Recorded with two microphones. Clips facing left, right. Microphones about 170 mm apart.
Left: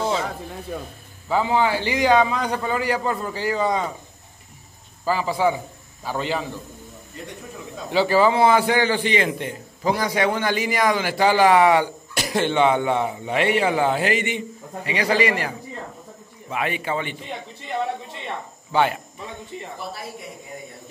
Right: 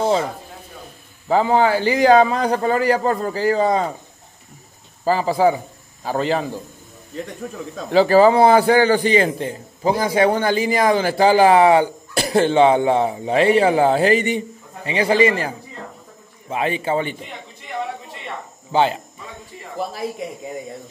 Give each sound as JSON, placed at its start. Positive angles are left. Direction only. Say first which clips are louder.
{"t": 0.7, "sound": "speech", "louder": "left 10 dB", "side_deg": 65}
{"t": 1.3, "sound": "a man's voice", "louder": "right 4 dB", "side_deg": -45}
{"t": 5.0, "sound": "a man's voice", "louder": "right 4 dB", "side_deg": -40}
{"t": 7.9, "sound": "a man's voice", "louder": "right 5 dB", "side_deg": -40}
{"t": 14.9, "sound": "a man's voice", "louder": "right 5 dB", "side_deg": -25}
{"t": 18.7, "sound": "speech", "louder": "right 3 dB", "side_deg": -25}
{"t": 19.5, "sound": "speech", "louder": "left 4 dB", "side_deg": 20}